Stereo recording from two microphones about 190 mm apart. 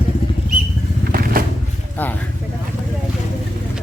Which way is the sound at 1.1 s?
50° right (ahead or behind).